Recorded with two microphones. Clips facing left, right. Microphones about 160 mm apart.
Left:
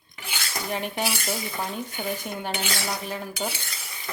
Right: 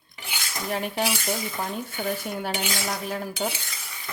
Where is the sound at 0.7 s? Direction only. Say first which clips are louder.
Right 2 dB; centre (ahead or behind).